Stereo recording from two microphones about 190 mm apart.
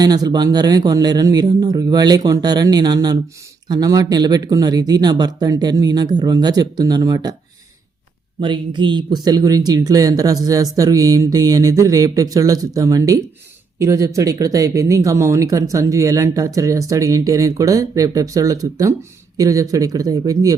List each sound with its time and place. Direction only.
0.0 s speech: 20° right (ahead or behind)
8.4 s speech: 25° right (ahead or behind)